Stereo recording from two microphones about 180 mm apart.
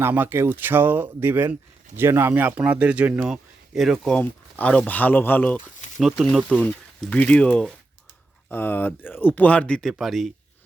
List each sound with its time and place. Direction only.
0.0 s speech: 10° right (ahead or behind); by 5.5 s 10° left (ahead or behind)
6.0 s speech: centre (ahead or behind)